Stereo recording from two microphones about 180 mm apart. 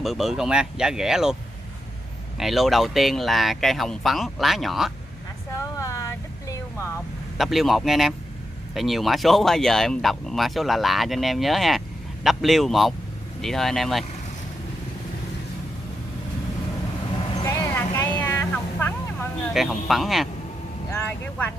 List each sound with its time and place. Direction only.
0.0 s speech: centre (ahead or behind)
2.3 s speech: centre (ahead or behind)
5.8 s vehicle: 15° left (ahead or behind)
7.3 s speech: centre (ahead or behind)
17.4 s vehicle: 20° left (ahead or behind)
19.5 s speech: centre (ahead or behind)